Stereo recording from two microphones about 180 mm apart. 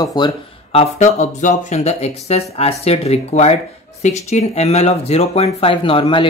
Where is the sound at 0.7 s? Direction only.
40° left (ahead or behind).